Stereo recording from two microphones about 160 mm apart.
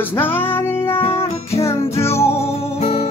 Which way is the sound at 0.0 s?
15° left (ahead or behind).